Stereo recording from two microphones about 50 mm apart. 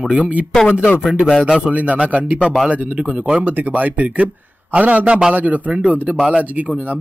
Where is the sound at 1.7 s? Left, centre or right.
Right.